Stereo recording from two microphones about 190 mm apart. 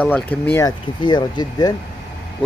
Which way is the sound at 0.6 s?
25° left (ahead or behind).